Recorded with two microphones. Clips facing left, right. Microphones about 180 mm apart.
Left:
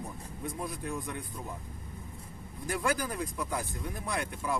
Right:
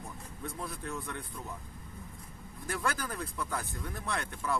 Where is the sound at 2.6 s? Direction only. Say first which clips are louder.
Left 4 dB; 15° left (ahead or behind).